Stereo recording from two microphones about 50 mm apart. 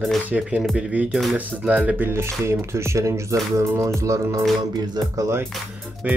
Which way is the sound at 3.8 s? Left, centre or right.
Right.